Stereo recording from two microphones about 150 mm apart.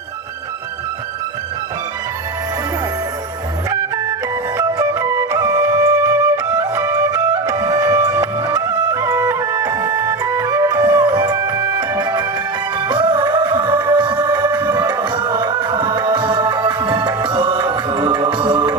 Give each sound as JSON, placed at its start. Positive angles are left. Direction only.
{"t": 4.5, "sound": "music", "side_deg": -20}